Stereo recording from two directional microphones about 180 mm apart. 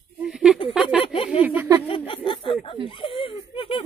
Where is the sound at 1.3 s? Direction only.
5° right (ahead or behind).